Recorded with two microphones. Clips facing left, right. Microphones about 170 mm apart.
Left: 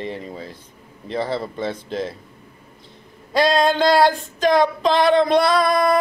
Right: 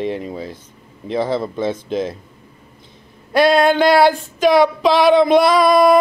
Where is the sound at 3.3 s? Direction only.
60° right (ahead or behind).